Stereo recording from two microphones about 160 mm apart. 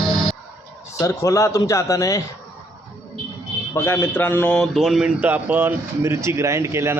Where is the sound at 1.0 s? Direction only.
20° left (ahead or behind).